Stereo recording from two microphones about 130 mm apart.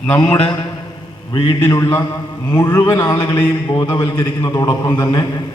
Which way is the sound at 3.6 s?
30° left (ahead or behind).